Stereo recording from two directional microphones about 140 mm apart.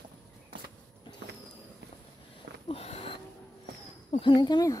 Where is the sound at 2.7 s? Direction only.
45° left (ahead or behind).